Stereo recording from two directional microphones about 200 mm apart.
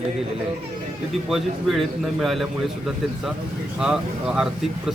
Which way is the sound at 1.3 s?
Centre (ahead or behind).